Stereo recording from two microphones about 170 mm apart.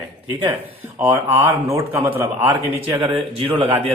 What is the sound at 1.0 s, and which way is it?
Speech, 15° right (ahead or behind).